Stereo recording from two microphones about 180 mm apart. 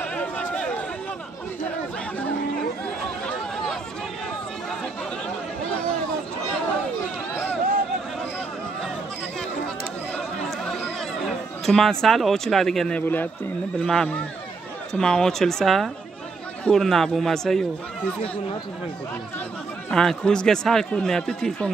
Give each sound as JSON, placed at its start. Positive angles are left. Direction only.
{"t": 0.0, "sound": "a sound", "side_deg": 5}
{"t": 10.1, "sound": "chatter", "side_deg": 5}
{"t": 13.7, "sound": "speech", "side_deg": 5}
{"t": 19.9, "sound": "speech", "side_deg": 5}